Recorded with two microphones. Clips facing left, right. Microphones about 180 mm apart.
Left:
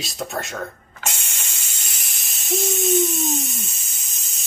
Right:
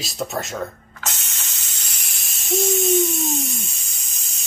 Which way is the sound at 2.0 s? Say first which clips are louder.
Even; centre (ahead or behind).